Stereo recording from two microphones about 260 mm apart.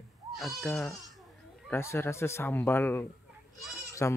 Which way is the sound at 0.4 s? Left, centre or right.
Centre.